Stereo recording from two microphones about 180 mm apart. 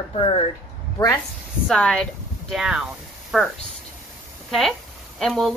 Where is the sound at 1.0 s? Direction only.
20° left (ahead or behind).